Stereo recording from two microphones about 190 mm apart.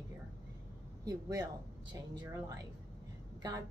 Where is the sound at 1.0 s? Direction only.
20° right (ahead or behind).